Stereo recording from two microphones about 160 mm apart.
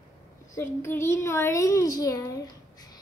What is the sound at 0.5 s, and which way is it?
A woman's voice, 15° left (ahead or behind).